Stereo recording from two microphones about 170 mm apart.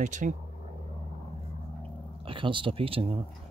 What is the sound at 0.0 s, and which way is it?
Speech, 45° right (ahead or behind).